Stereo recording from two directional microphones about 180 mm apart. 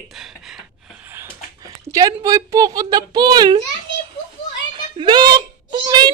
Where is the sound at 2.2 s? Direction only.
20° right (ahead or behind).